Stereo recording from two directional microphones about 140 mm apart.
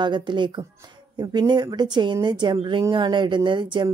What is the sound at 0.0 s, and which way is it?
A woman's voice, 35° right (ahead or behind).